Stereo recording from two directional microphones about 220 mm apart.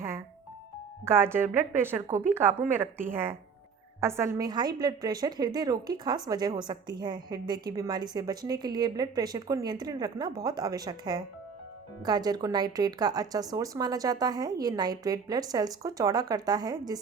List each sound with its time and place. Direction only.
1.0 s a woman's voice: 10° right (ahead or behind)